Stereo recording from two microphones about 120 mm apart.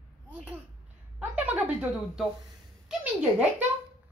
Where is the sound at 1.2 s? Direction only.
10° right (ahead or behind).